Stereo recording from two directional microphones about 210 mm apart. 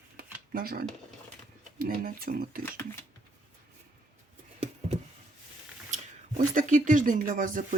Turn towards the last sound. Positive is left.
turn(degrees=-40)  # may be behind; listen again after turning